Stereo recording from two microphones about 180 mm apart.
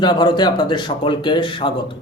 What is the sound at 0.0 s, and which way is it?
Speech, 25° left (ahead or behind).